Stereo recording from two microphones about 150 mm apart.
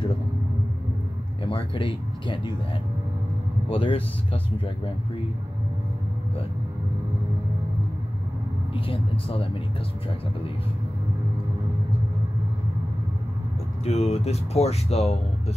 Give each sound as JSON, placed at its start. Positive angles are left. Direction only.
{"t": 1.4, "sound": "speech", "side_deg": 35}
{"t": 3.6, "sound": "speech", "side_deg": 40}
{"t": 8.7, "sound": "speech", "side_deg": 35}
{"t": 13.8, "sound": "speech", "side_deg": 45}